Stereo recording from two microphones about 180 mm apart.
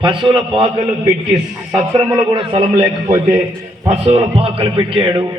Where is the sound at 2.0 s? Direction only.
15° right (ahead or behind).